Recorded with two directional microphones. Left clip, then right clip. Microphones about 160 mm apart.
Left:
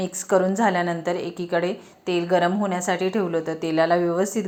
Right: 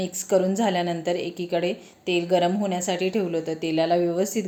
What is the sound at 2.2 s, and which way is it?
A woman's voice, 15° right (ahead or behind).